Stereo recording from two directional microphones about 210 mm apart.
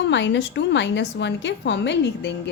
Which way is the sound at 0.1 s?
60° left (ahead or behind).